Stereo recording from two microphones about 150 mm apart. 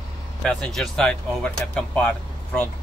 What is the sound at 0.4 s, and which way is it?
Speech, 5° left (ahead or behind).